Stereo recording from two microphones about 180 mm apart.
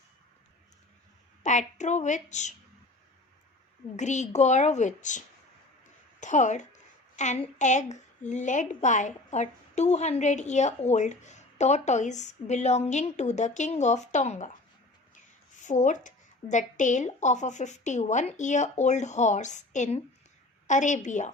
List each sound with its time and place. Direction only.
1.5 s a woman's voice: 40° left (ahead or behind)
3.9 s a woman's voice: 40° left (ahead or behind)
6.1 s a sound: 40° left (ahead or behind)
7.6 s a woman's voice: 40° left (ahead or behind)